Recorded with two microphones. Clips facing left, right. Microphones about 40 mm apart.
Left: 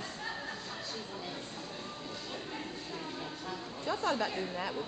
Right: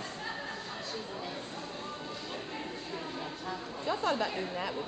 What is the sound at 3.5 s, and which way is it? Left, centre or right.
Speech, centre.